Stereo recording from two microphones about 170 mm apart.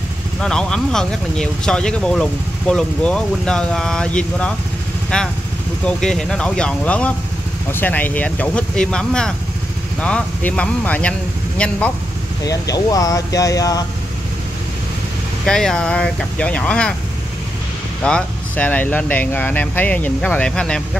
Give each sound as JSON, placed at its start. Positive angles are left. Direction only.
{"t": 0.4, "sound": "speech", "side_deg": 5}
{"t": 12.4, "sound": "speech", "side_deg": 20}
{"t": 15.4, "sound": "speech", "side_deg": 5}
{"t": 18.0, "sound": "speech", "side_deg": 5}